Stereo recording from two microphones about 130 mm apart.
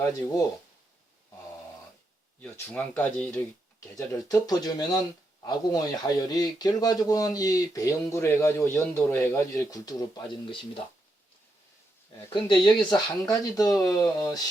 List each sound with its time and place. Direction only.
0.0 s speech: 25° left (ahead or behind)
2.4 s speech: 15° left (ahead or behind)
3.9 s speech: 25° left (ahead or behind)
12.3 s speech: 35° left (ahead or behind)